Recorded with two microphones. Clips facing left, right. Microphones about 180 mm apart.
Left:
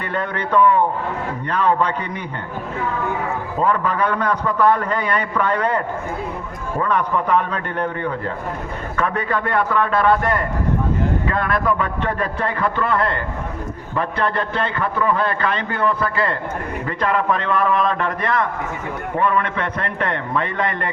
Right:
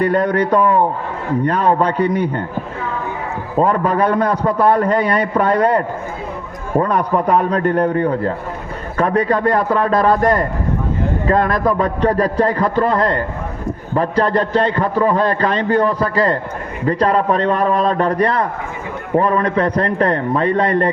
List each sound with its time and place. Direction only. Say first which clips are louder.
0.0 s a man's voice: right 10 dB; 40° right (ahead or behind)
3.6 s a man's voice: right 5 dB; 40° right (ahead or behind)